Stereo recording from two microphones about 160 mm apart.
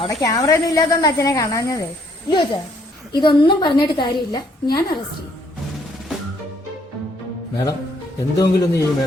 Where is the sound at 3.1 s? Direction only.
30° left (ahead or behind).